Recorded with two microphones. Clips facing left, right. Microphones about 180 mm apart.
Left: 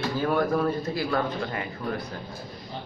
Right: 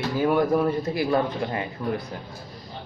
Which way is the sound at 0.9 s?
20° right (ahead or behind).